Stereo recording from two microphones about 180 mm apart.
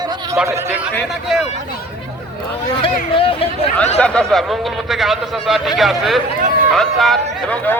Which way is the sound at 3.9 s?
5° left (ahead or behind).